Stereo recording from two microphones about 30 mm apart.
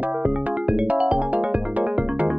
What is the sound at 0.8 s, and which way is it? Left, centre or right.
Music, right.